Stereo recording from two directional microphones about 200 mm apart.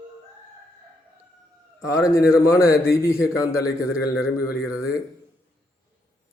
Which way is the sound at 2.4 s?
15° left (ahead or behind).